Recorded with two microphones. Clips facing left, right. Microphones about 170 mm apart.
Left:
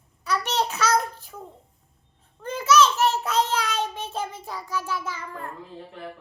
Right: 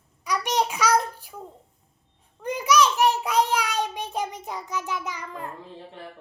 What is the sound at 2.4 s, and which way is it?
A child's voice, 15° right (ahead or behind).